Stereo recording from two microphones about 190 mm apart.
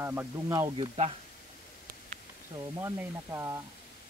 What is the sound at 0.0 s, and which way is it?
Speech, 15° right (ahead or behind).